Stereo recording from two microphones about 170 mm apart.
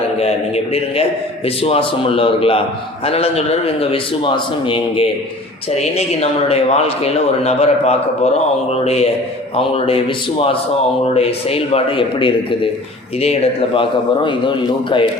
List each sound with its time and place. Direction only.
0.2 s a man's voice: 40° left (ahead or behind)